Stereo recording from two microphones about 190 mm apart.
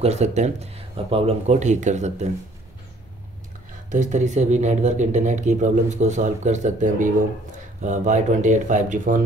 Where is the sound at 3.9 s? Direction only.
40° right (ahead or behind).